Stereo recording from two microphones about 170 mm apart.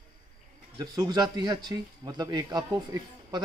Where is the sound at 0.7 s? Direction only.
25° right (ahead or behind).